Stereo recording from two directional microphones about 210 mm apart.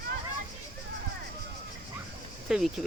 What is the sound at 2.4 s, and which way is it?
Speech, centre (ahead or behind).